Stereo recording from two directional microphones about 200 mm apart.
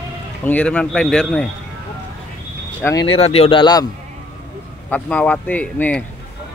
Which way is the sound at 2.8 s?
5° left (ahead or behind).